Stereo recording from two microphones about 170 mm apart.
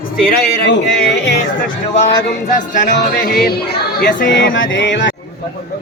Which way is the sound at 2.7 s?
50° left (ahead or behind).